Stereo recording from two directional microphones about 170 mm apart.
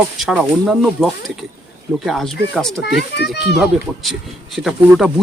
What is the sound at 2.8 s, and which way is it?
Speech, 75° left (ahead or behind).